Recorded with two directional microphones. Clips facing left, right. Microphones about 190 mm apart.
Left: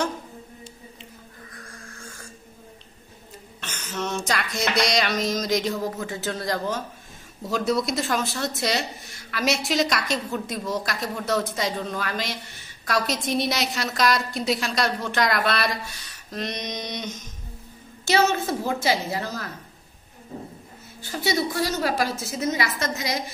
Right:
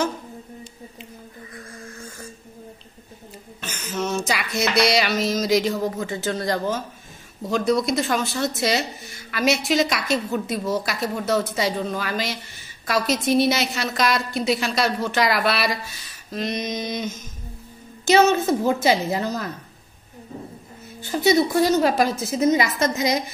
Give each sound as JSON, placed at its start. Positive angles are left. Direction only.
{"t": 3.6, "sound": "a sound", "side_deg": -5}
{"t": 7.4, "sound": "a woman's voice", "side_deg": 0}
{"t": 18.0, "sound": "a woman's voice", "side_deg": -20}
{"t": 21.0, "sound": "a woman's voice", "side_deg": -20}